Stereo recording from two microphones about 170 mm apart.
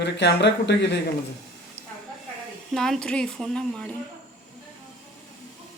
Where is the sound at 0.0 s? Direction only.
85° left.